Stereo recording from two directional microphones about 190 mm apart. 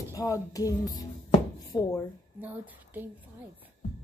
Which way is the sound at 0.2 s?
20° left (ahead or behind).